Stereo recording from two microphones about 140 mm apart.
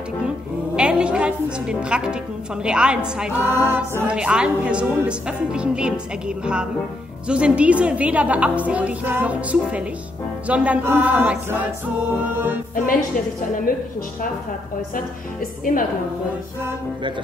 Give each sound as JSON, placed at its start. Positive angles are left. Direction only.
{"t": 0.7, "sound": "a woman's voice", "side_deg": -5}
{"t": 13.7, "sound": "a woman's voice", "side_deg": 90}